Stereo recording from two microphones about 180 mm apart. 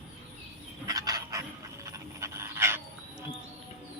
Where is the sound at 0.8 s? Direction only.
20° right (ahead or behind).